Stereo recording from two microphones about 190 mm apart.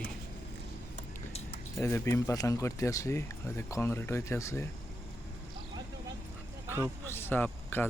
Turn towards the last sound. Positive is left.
turn(degrees=10)  # may be behind; listen again after turning